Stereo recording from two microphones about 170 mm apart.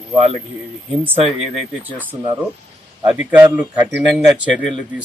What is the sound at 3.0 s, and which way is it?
Speech, 10° right (ahead or behind).